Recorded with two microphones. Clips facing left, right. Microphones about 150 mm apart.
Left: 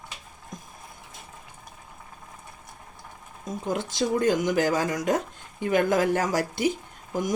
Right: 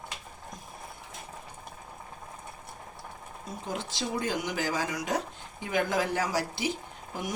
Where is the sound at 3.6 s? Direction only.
50° left (ahead or behind).